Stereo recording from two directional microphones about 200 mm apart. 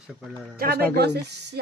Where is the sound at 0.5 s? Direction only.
50° right (ahead or behind).